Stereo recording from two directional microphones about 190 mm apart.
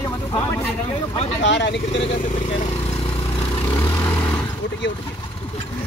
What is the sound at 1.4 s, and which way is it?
Speech, 65° left (ahead or behind).